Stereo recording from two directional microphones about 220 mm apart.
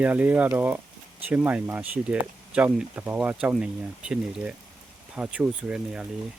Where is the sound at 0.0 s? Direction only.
5° right (ahead or behind).